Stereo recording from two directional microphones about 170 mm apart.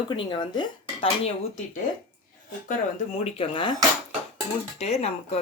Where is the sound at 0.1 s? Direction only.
25° left (ahead or behind).